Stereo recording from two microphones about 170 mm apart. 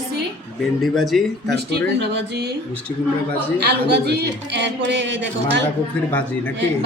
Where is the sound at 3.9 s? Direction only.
80° right.